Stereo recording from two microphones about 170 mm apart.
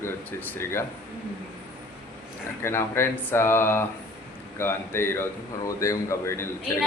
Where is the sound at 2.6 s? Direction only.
15° left (ahead or behind).